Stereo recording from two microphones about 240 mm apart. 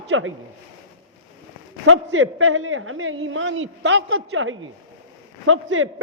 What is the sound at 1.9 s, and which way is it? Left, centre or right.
Speech, right.